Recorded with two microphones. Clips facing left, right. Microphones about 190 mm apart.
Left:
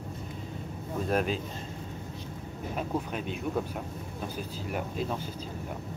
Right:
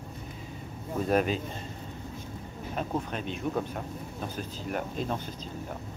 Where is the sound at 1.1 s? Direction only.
Centre (ahead or behind).